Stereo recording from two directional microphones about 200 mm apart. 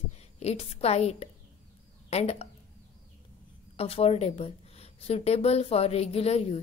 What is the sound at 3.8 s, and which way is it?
Speech, 30° left (ahead or behind).